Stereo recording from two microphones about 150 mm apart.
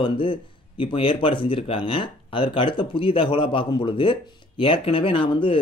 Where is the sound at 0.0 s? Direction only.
35° left (ahead or behind).